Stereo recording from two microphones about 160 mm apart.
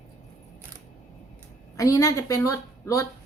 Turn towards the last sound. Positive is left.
turn(degrees=20)  # may be behind; listen again after turning